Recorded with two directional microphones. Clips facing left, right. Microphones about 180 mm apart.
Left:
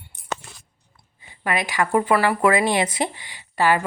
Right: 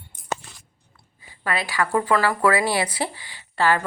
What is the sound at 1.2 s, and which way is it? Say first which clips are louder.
A woman's voice: left 2 dB; 20° left (ahead or behind).